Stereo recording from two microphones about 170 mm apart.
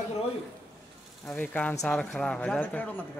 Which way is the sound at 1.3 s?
10° left (ahead or behind).